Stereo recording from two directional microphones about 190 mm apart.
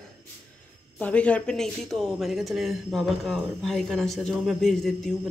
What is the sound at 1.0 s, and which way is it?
A woman's voice, 5° left (ahead or behind).